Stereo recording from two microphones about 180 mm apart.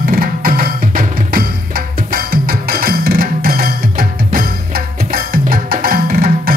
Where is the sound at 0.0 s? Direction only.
55° right (ahead or behind).